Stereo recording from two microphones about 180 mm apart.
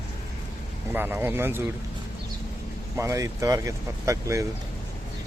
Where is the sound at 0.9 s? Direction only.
10° right (ahead or behind).